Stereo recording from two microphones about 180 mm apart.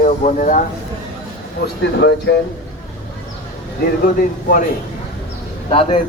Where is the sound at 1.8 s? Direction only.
70° left (ahead or behind).